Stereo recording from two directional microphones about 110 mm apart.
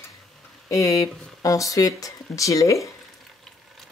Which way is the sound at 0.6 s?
30° left (ahead or behind).